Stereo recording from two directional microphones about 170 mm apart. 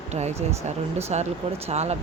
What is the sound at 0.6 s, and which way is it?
Speech, 40° right (ahead or behind).